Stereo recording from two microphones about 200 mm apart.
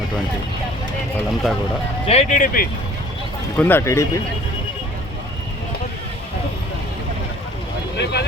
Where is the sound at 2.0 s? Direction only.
30° left (ahead or behind).